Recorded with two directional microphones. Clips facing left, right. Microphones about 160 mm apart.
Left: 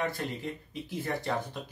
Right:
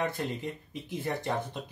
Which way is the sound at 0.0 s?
20° right (ahead or behind).